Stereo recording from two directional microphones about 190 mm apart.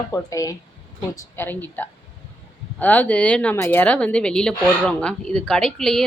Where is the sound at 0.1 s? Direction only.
20° left (ahead or behind).